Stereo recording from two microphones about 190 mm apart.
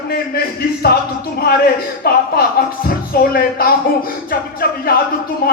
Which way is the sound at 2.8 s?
50° left (ahead or behind).